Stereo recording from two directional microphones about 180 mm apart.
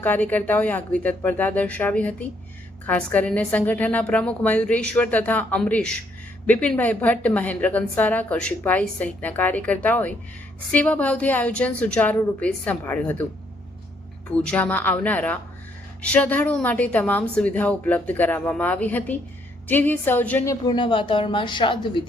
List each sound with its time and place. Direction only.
0.0 s a woman's voice: 10° left (ahead or behind)
14.3 s a woman's voice: 5° left (ahead or behind); by 22.0 s 25° left (ahead or behind)